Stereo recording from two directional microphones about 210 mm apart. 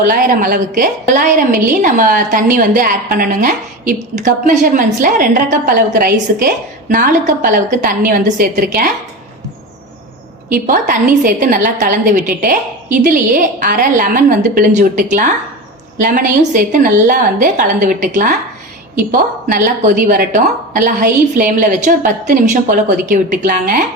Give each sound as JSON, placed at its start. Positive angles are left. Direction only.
{"t": 0.1, "sound": "a woman's voice", "side_deg": -40}
{"t": 10.5, "sound": "a woman's voice", "side_deg": -40}